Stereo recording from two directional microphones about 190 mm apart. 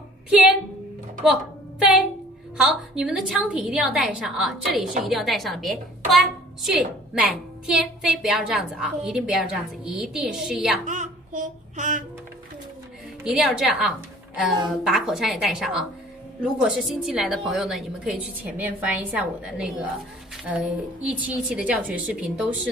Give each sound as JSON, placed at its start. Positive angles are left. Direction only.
{"t": 1.2, "sound": "a woman's voice", "side_deg": -5}
{"t": 10.9, "sound": "child singing", "side_deg": -40}
{"t": 13.2, "sound": "a woman's voice", "side_deg": 0}
{"t": 21.1, "sound": "a woman's voice", "side_deg": -5}